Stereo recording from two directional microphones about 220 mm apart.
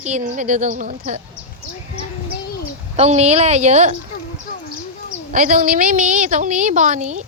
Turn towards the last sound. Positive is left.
turn(degrees=-35)  # may be behind; listen again after turning